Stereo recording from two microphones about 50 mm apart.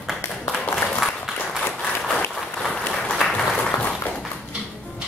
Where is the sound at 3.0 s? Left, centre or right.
Centre.